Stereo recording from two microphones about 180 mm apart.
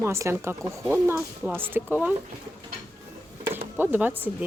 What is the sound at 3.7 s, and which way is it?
Speech, 10° right (ahead or behind).